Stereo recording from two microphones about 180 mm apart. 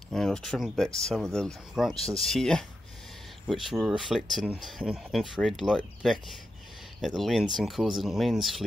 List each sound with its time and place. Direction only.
0.1 s speech: 5° left (ahead or behind)